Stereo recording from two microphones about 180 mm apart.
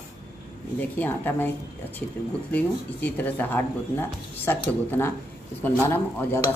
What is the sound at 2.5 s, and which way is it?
Speech, 10° left (ahead or behind).